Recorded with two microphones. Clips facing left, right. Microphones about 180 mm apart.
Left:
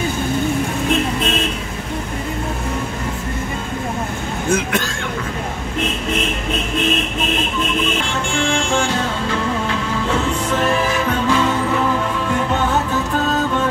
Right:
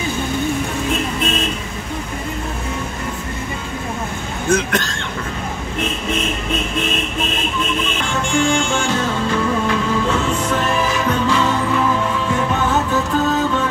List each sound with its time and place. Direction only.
4.5 s speech: 5° left (ahead or behind)